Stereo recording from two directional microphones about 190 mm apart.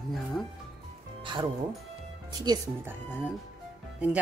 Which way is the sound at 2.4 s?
15° right (ahead or behind).